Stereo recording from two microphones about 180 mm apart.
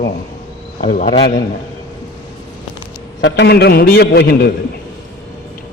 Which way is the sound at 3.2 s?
75° left (ahead or behind).